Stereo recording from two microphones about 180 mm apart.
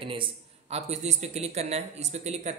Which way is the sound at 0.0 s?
30° right (ahead or behind).